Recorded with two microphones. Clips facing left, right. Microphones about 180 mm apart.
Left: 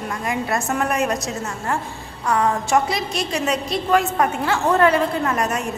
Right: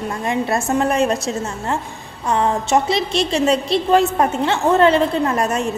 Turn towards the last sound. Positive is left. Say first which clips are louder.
# right 3 dB
turn(degrees=-30)  # may be behind; listen again after turning